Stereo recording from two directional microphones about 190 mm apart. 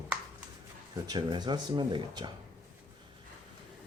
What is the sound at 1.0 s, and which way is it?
Speech, 20° right (ahead or behind).